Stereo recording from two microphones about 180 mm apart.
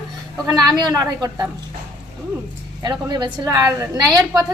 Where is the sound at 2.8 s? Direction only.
20° right (ahead or behind).